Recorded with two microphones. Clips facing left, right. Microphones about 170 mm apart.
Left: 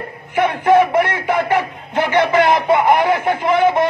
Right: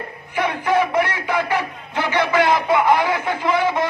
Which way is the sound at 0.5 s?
55° left (ahead or behind).